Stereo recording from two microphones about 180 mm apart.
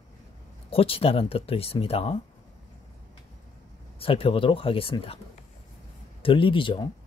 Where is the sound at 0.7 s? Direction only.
30° left (ahead or behind).